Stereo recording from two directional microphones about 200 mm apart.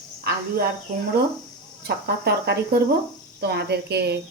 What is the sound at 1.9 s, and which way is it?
A woman's voice, 55° right (ahead or behind).